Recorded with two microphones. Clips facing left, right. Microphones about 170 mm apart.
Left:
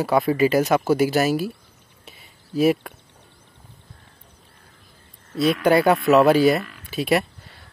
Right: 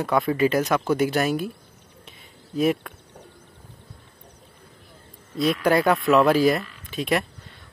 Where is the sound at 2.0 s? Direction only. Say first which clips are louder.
Left 2 dB; 5° left (ahead or behind).